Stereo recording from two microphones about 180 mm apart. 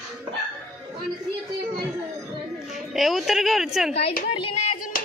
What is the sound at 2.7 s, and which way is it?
Music, centre (ahead or behind).